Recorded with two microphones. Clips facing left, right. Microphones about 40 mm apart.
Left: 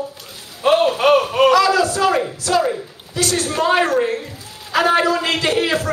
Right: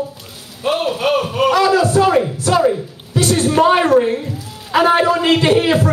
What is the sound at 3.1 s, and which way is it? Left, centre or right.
A man's voice, right.